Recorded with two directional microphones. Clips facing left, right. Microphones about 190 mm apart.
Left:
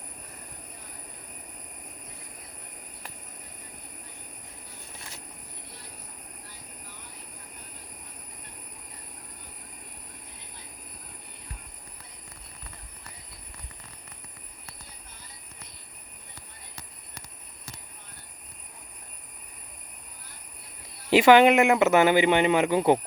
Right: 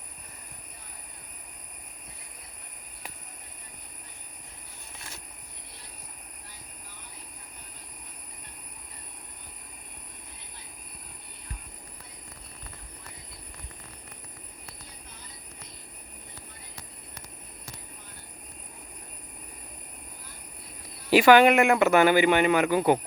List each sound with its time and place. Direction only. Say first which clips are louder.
21.1 s speech: left 1 dB; 20° left (ahead or behind)